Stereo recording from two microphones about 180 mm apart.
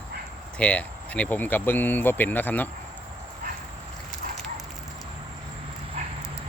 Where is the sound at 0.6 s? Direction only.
5° left (ahead or behind).